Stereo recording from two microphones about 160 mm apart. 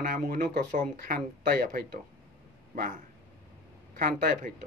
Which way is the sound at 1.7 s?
70° right (ahead or behind).